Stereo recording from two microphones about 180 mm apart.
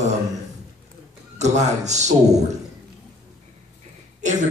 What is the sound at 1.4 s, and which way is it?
A man's voice, 40° right (ahead or behind).